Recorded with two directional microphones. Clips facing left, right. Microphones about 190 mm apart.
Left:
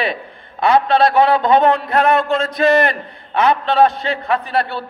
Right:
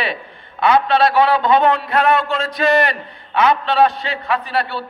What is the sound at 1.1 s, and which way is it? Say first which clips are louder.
A man's voice: left 1 dB; 50° left (ahead or behind).